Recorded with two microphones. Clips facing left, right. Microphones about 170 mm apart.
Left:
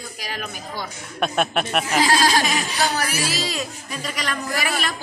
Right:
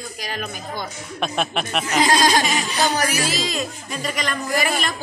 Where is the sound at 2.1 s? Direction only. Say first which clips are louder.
Right 2 dB; 20° right (ahead or behind).